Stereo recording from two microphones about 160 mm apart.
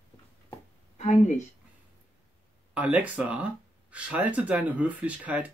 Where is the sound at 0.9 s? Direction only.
45° left (ahead or behind).